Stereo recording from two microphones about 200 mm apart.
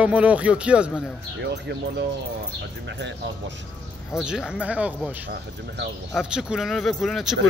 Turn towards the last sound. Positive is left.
turn(degrees=0)  # may be behind; listen again after turning